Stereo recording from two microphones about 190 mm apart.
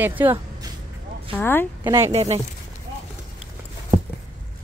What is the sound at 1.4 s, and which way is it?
Speech, 10° left (ahead or behind).